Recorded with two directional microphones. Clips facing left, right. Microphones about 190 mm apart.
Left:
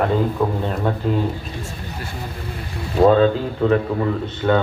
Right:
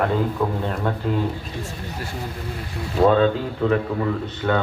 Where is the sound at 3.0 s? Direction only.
35° left (ahead or behind).